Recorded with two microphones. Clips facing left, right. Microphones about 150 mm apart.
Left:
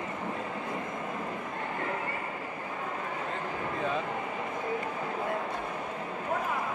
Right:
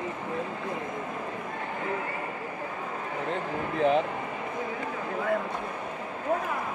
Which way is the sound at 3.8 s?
75° right (ahead or behind).